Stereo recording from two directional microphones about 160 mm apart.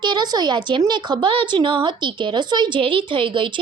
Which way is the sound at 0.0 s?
25° right (ahead or behind).